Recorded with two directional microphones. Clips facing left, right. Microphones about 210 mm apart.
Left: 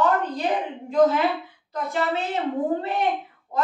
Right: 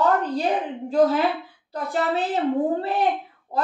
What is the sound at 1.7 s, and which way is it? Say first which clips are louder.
Speech: right 1 dB; 35° right (ahead or behind).